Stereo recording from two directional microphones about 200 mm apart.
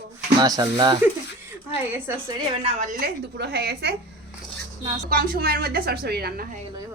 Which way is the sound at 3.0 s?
55° right (ahead or behind).